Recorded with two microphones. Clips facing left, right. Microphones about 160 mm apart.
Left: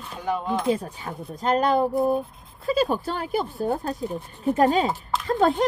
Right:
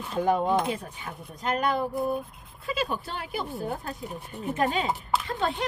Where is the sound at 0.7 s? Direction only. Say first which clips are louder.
Left 8 dB; 35° left (ahead or behind).